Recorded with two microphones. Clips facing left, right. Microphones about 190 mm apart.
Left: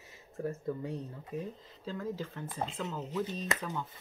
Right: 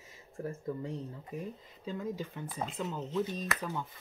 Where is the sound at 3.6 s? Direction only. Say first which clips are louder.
Right 1 dB; 10° right (ahead or behind).